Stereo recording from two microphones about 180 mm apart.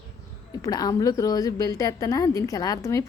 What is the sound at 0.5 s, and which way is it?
A woman's voice, 20° left (ahead or behind).